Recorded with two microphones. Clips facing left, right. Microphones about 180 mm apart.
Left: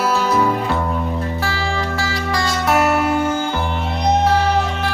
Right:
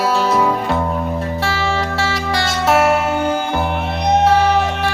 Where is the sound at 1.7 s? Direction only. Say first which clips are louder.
Right 3 dB; 30° right (ahead or behind).